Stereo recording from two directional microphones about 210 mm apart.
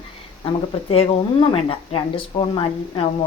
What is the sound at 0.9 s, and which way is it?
Speech, 25° left (ahead or behind).